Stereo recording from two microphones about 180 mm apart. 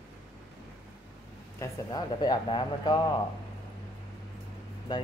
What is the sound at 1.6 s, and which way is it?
Speech, 20° left (ahead or behind).